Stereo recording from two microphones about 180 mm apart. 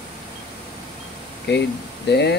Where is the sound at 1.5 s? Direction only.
70° left (ahead or behind).